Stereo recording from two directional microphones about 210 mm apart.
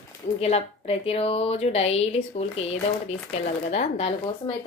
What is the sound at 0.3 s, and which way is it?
A woman's voice, 30° left (ahead or behind).